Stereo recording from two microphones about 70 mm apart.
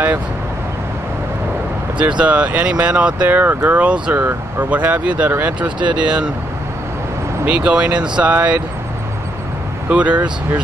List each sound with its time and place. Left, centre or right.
2.0 s speech: centre
7.4 s speech: centre
9.8 s speech: centre